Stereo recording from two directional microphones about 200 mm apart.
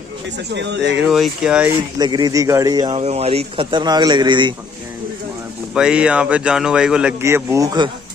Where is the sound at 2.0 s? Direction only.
20° right (ahead or behind).